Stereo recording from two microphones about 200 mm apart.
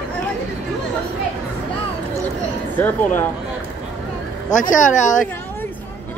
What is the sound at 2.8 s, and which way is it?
Speech, 10° left (ahead or behind).